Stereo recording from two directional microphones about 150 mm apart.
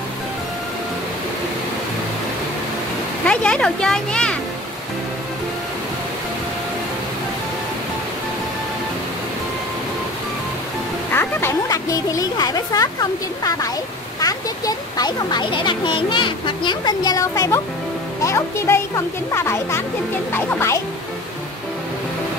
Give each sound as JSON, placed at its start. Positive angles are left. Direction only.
{"t": 3.3, "sound": "speech", "side_deg": 5}
{"t": 11.1, "sound": "a child's voice", "side_deg": 15}